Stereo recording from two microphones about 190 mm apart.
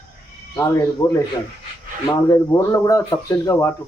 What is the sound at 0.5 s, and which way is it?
Speech, 15° left (ahead or behind).